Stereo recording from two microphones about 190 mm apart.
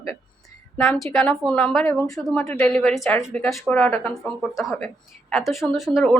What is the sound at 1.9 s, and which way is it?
Speech, 15° left (ahead or behind).